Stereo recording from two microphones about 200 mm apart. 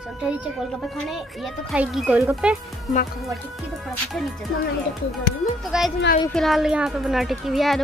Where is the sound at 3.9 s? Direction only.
Centre (ahead or behind).